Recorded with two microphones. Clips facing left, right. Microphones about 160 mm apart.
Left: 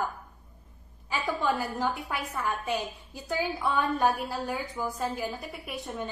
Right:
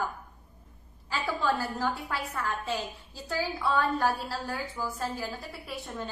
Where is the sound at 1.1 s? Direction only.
15° left (ahead or behind).